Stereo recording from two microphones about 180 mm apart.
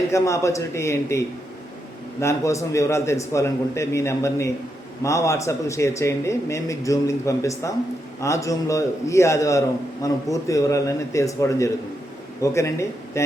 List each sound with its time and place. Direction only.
0.1 s a man's voice: 15° left (ahead or behind)
2.2 s a man's voice: 15° left (ahead or behind)